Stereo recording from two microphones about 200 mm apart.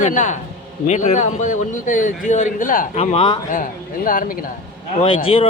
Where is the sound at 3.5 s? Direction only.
40° left (ahead or behind).